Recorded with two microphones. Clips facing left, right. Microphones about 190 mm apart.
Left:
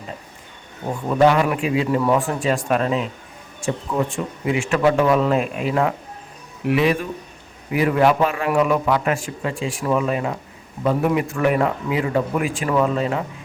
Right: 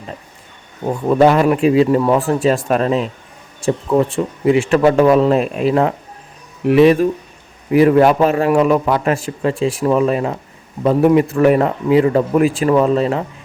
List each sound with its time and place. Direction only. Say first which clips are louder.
1.2 s a man's voice: right 4 dB; 40° right (ahead or behind)